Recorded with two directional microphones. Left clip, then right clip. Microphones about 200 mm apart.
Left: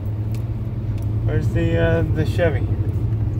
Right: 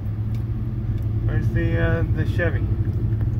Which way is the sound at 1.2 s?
20° left (ahead or behind).